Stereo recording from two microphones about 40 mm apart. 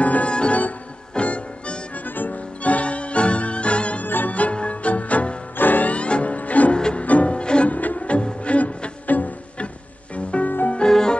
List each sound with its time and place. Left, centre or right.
0.0 s music: left
0.3 s music: left
2.0 s music: left
2.6 s music: left
4.0 s music: left
4.3 s music: left
5.6 s music: left
5.9 s music: left
6.8 s music: left
7.7 s music: left
10.9 s music: centre